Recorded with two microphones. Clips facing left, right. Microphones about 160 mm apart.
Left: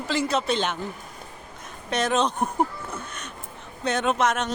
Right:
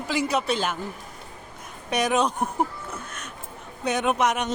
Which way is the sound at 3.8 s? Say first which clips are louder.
Even; 10° right (ahead or behind).